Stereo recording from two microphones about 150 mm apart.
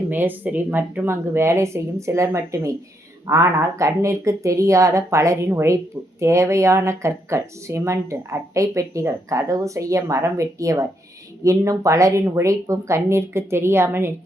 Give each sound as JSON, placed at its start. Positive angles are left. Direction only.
{"t": 0.1, "sound": "speech", "side_deg": -10}